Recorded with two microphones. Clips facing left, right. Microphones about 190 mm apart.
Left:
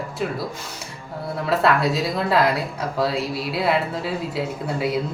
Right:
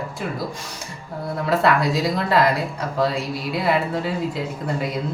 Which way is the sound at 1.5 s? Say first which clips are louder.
Even; centre (ahead or behind).